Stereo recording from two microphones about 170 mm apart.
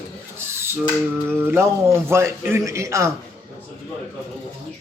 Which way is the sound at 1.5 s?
15° right (ahead or behind).